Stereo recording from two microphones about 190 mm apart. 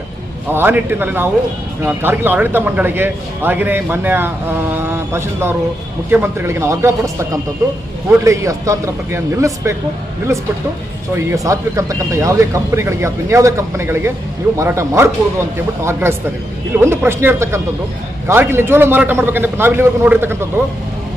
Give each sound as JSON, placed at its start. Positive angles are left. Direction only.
{"t": 0.5, "sound": "speech", "side_deg": -10}
{"t": 11.1, "sound": "speech", "side_deg": -15}